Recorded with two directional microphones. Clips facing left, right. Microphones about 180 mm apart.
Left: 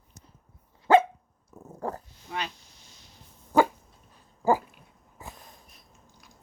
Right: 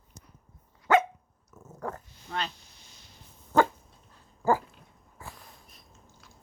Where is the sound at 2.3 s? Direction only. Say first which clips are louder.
Even; 10° left (ahead or behind).